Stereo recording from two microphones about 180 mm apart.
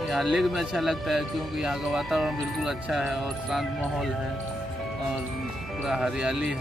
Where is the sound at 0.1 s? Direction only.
Centre (ahead or behind).